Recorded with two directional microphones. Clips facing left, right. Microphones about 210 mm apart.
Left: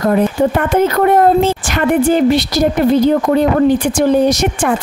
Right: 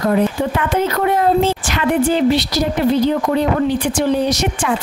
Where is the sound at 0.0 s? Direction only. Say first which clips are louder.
Left 3 dB; 50° left (ahead or behind).